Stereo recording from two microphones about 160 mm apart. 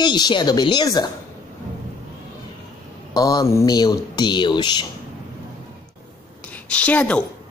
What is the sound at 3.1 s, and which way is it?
Speech, 25° left (ahead or behind).